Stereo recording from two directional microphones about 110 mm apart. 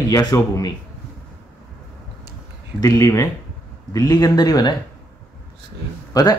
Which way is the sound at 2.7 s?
30° left (ahead or behind).